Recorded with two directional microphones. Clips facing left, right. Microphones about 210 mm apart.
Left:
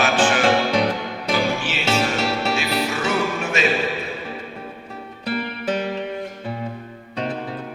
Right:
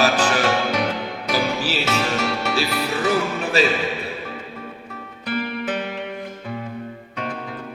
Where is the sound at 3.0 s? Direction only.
35° right (ahead or behind).